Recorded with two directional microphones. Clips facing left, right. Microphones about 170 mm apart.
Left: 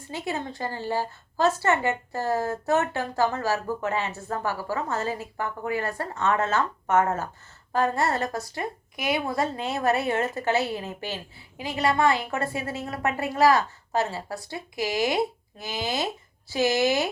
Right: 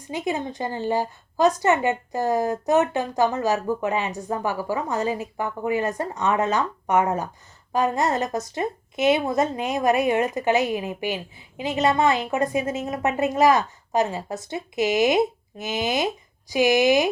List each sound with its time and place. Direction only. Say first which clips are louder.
0.0 s a woman's voice: right 4 dB; 15° right (ahead or behind)